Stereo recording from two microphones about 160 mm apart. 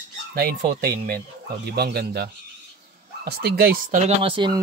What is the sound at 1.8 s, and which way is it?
Speech, 85° right.